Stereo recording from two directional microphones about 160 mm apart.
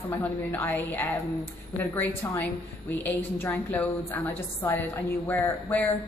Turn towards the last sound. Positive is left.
turn(degrees=10)  # may be behind; listen again after turning